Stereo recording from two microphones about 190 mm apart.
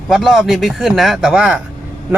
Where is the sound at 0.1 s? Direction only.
Centre (ahead or behind).